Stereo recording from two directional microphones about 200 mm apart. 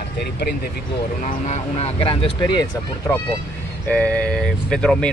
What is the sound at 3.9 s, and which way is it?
Speech, 5° left (ahead or behind).